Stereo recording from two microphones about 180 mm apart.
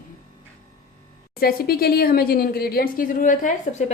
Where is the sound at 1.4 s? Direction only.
55° left (ahead or behind); by 3.9 s 40° left (ahead or behind).